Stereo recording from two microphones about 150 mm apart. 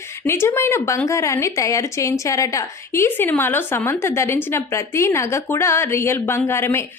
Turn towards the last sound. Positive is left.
turn(degrees=15)  # may be behind; listen again after turning